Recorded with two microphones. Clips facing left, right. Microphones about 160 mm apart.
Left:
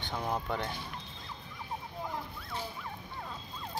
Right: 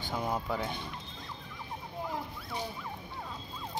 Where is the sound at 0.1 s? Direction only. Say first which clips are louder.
Right 1 dB; 5° right (ahead or behind).